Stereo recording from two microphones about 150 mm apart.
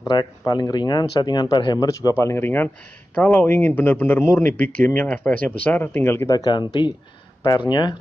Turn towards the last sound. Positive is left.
turn(degrees=30)  # may be behind; listen again after turning